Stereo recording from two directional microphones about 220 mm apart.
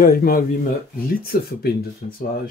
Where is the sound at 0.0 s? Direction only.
40° left (ahead or behind).